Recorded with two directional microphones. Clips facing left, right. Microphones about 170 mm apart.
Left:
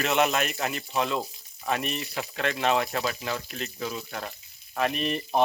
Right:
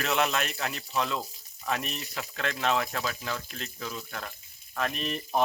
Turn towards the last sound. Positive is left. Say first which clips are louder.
# left 5 dB
turn(degrees=5)  # may be behind; listen again after turning